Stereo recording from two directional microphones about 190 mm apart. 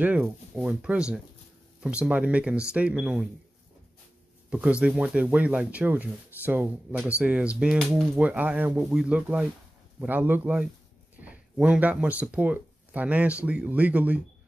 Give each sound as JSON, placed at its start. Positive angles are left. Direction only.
{"t": 0.0, "sound": "speech", "side_deg": -5}
{"t": 4.5, "sound": "speech", "side_deg": -5}